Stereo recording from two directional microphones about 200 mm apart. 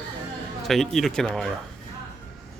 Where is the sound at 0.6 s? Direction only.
Centre (ahead or behind).